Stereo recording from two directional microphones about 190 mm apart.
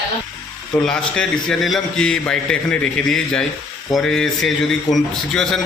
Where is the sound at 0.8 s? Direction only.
5° left (ahead or behind).